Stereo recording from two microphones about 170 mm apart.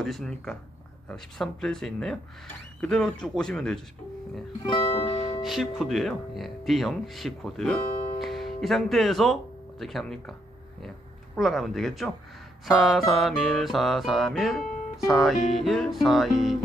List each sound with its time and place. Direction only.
0.0 s music: centre (ahead or behind)
4.6 s music: 30° left (ahead or behind)
5.4 s speech: centre (ahead or behind)
11.3 s music: centre (ahead or behind)